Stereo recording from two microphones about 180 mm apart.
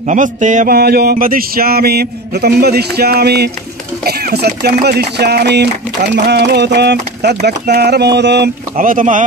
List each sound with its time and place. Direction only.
0.0 s a man's voice: 45° right (ahead or behind)
0.7 s mantra: 60° right (ahead or behind)
6.1 s speech: 70° right (ahead or behind)
8.7 s a man's voice: 50° right (ahead or behind)